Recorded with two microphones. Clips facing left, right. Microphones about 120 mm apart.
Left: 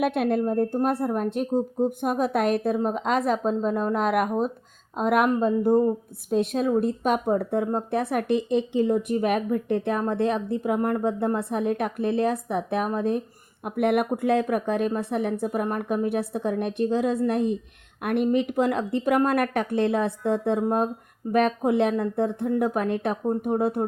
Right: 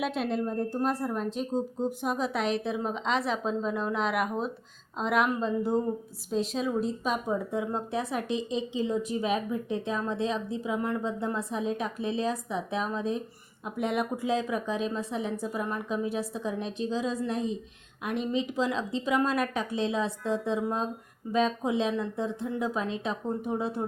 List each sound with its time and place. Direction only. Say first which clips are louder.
0.0 s a woman's voice: left 6 dB; 55° left (ahead or behind)